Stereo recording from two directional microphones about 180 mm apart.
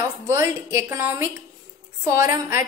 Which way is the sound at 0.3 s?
15° right (ahead or behind).